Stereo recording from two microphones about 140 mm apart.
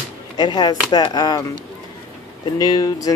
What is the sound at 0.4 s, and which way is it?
Speech, 30° left (ahead or behind).